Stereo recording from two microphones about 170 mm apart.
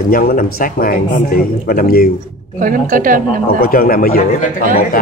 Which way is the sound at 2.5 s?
50° right (ahead or behind).